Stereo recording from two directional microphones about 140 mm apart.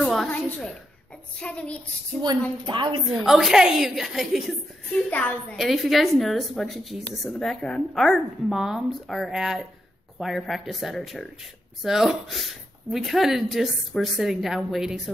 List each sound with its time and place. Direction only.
0.0 s a woman's voice: centre (ahead or behind)
2.6 s a woman's voice: 35° right (ahead or behind)
3.1 s a woman's voice: centre (ahead or behind)
5.1 s a woman's voice: 10° left (ahead or behind)
5.6 s a woman's voice: centre (ahead or behind)